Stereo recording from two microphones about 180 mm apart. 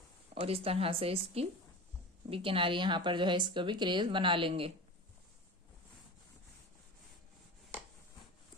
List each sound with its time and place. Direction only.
0.3 s a woman's voice: 35° right (ahead or behind)